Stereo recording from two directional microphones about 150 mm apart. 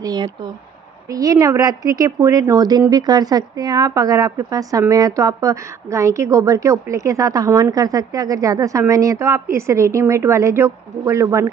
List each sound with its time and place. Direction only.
0.0 s a woman's voice: 25° right (ahead or behind)